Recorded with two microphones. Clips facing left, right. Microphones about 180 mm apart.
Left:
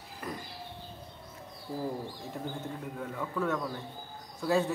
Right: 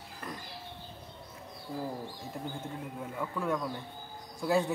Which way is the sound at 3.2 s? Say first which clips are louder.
Even; 10° right (ahead or behind).